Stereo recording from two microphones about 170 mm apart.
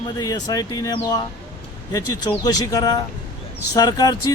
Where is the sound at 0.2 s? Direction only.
20° left (ahead or behind).